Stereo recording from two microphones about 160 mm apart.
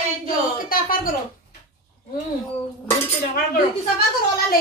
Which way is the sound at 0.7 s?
60° left (ahead or behind).